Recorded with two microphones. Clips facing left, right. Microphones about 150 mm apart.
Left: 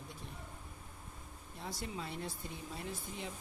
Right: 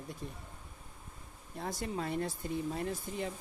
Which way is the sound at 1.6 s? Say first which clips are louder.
Right 6 dB; 50° right (ahead or behind).